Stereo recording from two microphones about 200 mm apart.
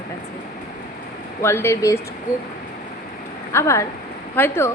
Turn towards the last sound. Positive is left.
turn(degrees=10)  # may be behind; listen again after turning